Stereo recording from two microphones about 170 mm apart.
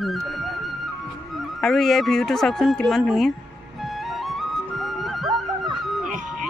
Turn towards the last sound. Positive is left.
turn(degrees=0)  # may be behind; listen again after turning